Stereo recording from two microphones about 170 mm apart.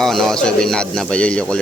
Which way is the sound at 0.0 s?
Centre (ahead or behind).